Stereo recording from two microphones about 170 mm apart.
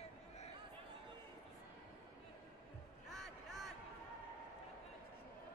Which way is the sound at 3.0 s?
Centre (ahead or behind).